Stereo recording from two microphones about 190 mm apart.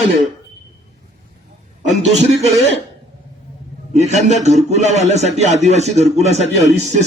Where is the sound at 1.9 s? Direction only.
35° right (ahead or behind).